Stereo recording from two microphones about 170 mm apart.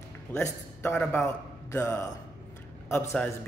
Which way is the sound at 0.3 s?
10° left (ahead or behind).